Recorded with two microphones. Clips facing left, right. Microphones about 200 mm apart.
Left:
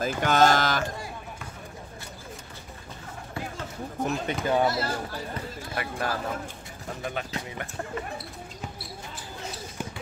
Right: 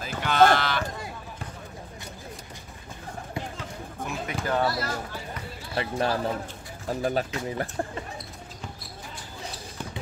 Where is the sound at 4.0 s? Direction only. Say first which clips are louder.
Left 7 dB; 55° right (ahead or behind).